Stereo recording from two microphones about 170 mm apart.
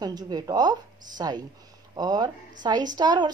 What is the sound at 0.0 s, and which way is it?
A woman's voice, 25° right (ahead or behind).